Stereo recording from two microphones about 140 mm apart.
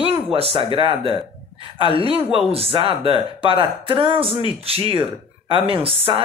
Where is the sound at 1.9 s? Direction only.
40° right (ahead or behind).